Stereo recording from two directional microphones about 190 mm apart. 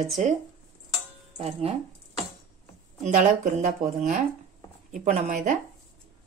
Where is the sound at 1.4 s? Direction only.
30° right (ahead or behind).